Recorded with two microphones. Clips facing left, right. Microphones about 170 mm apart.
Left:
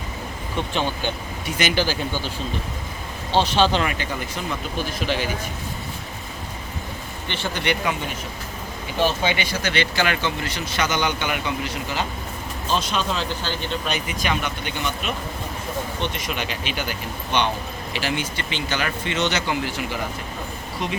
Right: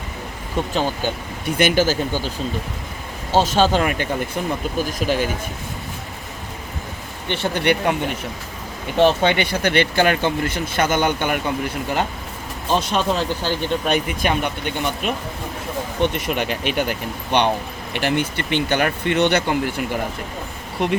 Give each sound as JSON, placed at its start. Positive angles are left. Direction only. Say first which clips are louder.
{"t": 0.7, "sound": "speech", "louder": "right 3 dB", "side_deg": -40}
{"t": 1.5, "sound": "speech", "louder": "right 5 dB", "side_deg": -55}
{"t": 3.3, "sound": "speech", "louder": "right 3 dB", "side_deg": -45}
{"t": 7.3, "sound": "speech", "louder": "right 6 dB", "side_deg": -55}
{"t": 9.0, "sound": "speech", "louder": "right 6 dB", "side_deg": -60}